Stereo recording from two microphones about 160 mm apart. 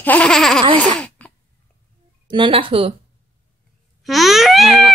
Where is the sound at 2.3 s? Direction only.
35° right (ahead or behind).